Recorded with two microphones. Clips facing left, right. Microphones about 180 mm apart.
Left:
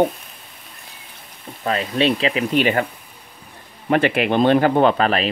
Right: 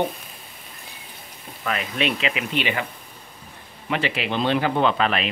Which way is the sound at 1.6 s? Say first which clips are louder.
Left 6 dB; 35° left (ahead or behind).